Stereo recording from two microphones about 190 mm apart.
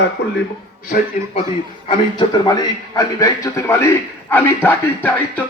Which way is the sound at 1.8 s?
25° left (ahead or behind).